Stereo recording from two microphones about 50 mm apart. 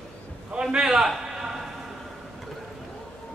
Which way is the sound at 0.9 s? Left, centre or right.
Centre.